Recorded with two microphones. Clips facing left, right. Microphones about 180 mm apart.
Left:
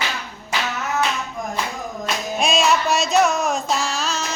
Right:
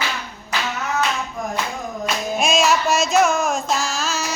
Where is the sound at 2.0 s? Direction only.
Centre (ahead or behind).